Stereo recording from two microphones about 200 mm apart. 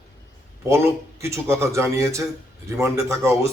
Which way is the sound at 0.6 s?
15° right (ahead or behind).